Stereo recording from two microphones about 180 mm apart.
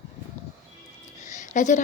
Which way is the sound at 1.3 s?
45° left (ahead or behind).